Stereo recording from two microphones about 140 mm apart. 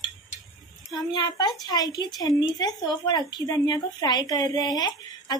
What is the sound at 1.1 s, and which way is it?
A woman's voice, 30° left (ahead or behind).